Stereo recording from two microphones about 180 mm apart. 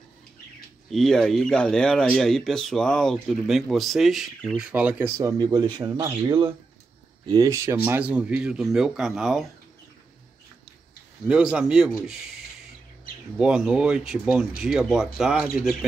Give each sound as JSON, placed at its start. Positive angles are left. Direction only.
{"t": 0.8, "sound": "speech", "side_deg": 0}
{"t": 11.2, "sound": "speech", "side_deg": -5}